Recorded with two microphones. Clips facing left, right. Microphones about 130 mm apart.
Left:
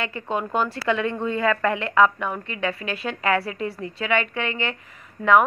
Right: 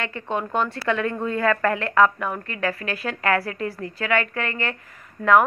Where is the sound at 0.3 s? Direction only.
Centre (ahead or behind).